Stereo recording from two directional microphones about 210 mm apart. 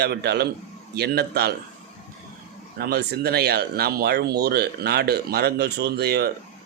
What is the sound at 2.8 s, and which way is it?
Speech, 50° right (ahead or behind).